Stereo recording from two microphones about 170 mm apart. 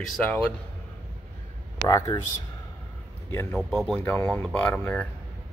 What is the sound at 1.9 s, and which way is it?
Speech, 20° left (ahead or behind).